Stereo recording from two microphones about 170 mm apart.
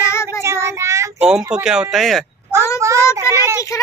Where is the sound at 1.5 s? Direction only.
5° right (ahead or behind).